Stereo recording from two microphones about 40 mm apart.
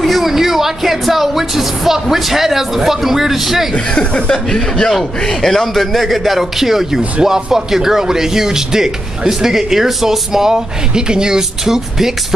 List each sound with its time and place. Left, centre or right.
0.0 s a man's voice: centre
3.9 s a man's voice: centre